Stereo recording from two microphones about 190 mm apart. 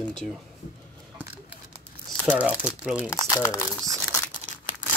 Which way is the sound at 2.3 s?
10° right (ahead or behind).